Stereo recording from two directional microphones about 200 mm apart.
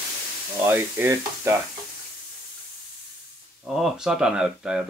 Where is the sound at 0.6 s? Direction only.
10° right (ahead or behind).